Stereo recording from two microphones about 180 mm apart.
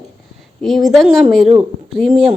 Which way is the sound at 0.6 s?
Centre (ahead or behind).